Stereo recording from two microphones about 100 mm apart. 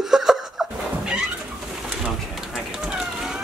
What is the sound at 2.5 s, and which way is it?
Bird, 5° right (ahead or behind).